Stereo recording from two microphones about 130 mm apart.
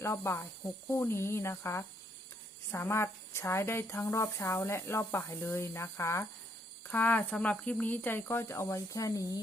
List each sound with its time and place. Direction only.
0.0 s speech: 20° left (ahead or behind)